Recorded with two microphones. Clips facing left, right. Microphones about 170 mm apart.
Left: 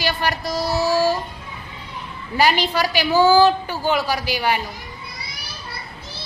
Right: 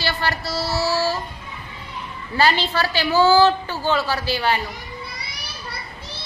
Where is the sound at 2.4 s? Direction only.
15° left (ahead or behind).